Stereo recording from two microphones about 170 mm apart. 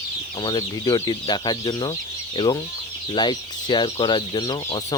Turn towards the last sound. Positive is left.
turn(degrees=25)  # may be behind; listen again after turning